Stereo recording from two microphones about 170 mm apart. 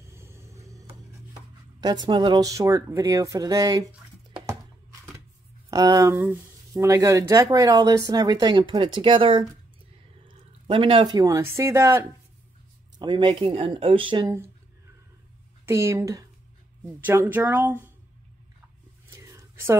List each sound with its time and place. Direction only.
0.1 s vehicle: 15° right (ahead or behind)
1.8 s speech: 25° right (ahead or behind)
5.7 s speech: 20° right (ahead or behind)
13.0 s speech: 25° right (ahead or behind)
15.6 s speech: 15° right (ahead or behind)
19.0 s whispering: 15° right (ahead or behind)